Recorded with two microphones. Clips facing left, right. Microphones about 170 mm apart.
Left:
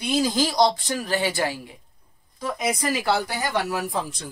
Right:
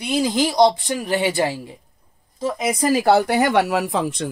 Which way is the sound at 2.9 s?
50° right (ahead or behind).